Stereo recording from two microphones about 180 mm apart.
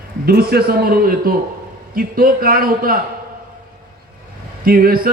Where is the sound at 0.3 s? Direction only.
60° right (ahead or behind).